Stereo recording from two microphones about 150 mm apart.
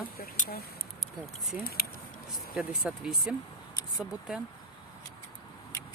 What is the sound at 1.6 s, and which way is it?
Speech, 85° left.